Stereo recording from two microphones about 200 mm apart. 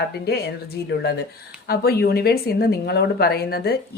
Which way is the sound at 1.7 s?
50° left (ahead or behind).